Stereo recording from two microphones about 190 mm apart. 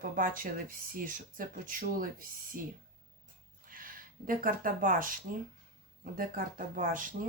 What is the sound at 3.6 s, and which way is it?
Speech, 45° right (ahead or behind).